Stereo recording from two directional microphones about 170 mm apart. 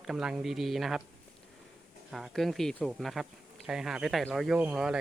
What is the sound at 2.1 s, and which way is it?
Speech, centre (ahead or behind).